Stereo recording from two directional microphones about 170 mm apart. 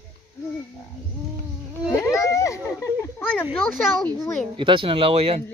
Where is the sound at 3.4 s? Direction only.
Centre (ahead or behind).